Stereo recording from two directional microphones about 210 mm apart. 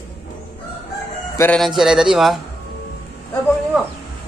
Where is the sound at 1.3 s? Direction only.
10° left (ahead or behind).